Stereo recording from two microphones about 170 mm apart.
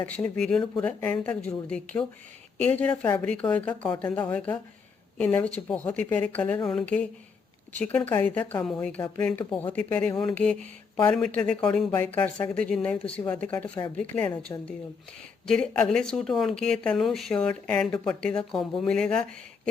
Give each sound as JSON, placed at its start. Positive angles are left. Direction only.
{"t": 0.0, "sound": "a woman's voice", "side_deg": 10}
{"t": 7.9, "sound": "a woman's voice", "side_deg": 10}
{"t": 15.4, "sound": "speech", "side_deg": 5}